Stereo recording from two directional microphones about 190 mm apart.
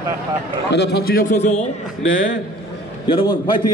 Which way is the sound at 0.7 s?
60° left (ahead or behind).